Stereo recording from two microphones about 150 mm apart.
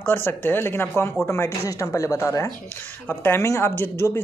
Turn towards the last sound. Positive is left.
turn(degrees=15)  # may be behind; listen again after turning